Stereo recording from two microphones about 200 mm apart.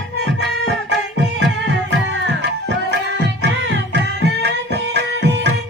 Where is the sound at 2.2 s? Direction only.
60° right (ahead or behind).